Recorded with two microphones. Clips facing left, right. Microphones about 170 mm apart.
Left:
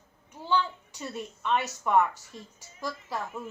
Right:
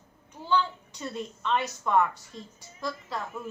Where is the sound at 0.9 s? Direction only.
10° left (ahead or behind).